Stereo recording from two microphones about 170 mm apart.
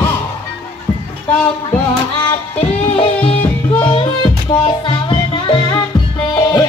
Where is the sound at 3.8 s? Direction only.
30° left (ahead or behind).